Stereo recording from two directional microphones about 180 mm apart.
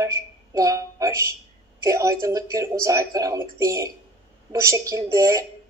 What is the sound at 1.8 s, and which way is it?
Speech, 15° right (ahead or behind).